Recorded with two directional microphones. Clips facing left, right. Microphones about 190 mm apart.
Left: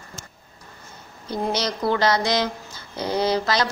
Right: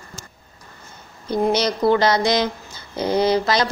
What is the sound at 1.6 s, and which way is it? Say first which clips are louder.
A woman's voice: right 2 dB; 20° right (ahead or behind).